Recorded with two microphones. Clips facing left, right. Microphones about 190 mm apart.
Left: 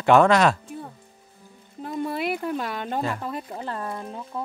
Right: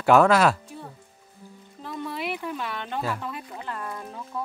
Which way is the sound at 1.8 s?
45° left (ahead or behind).